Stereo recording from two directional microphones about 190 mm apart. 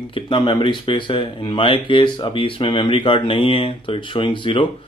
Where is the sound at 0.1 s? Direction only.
25° left (ahead or behind).